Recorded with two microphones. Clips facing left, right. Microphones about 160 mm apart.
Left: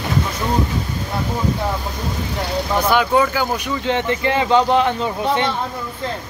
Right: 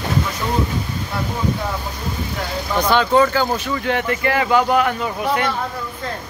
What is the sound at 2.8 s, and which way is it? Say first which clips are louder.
Speech: right 1 dB; 10° left (ahead or behind).